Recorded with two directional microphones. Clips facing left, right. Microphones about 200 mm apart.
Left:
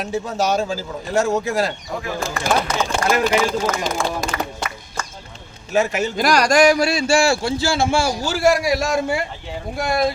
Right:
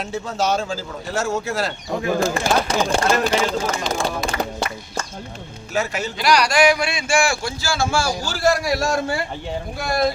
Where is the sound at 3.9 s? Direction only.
45° left (ahead or behind).